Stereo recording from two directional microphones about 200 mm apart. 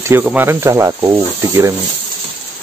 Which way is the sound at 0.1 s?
10° right (ahead or behind).